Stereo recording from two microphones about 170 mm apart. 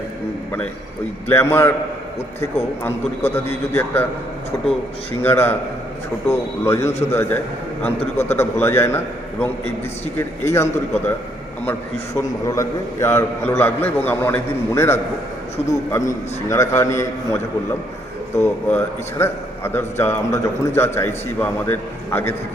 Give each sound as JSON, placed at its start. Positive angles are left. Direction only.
{"t": 1.3, "sound": "a man's voice", "side_deg": 15}
{"t": 3.2, "sound": "a man's voice", "side_deg": 15}
{"t": 7.9, "sound": "a man's voice", "side_deg": 40}
{"t": 8.4, "sound": "a man's voice", "side_deg": 15}
{"t": 11.7, "sound": "a man's voice", "side_deg": 15}